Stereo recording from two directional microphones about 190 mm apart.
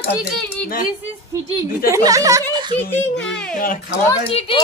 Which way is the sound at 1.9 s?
15° right (ahead or behind).